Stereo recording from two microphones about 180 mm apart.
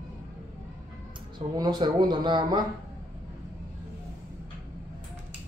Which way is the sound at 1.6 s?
25° right (ahead or behind).